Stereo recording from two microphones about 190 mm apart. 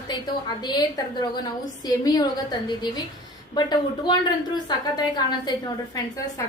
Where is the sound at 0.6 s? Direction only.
20° left (ahead or behind).